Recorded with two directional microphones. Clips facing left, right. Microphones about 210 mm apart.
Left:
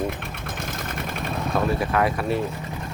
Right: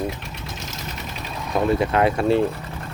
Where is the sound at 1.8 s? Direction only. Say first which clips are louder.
Right 3 dB; 25° right (ahead or behind).